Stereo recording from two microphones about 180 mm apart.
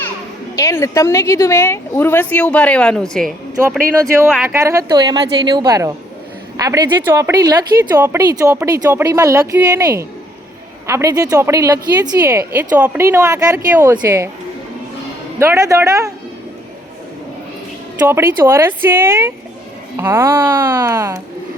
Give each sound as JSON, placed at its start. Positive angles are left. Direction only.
{"t": 0.5, "sound": "speech", "side_deg": 15}
{"t": 4.4, "sound": "a woman's voice", "side_deg": -15}
{"t": 15.4, "sound": "a woman's voice", "side_deg": -15}
{"t": 18.0, "sound": "a woman's voice", "side_deg": -10}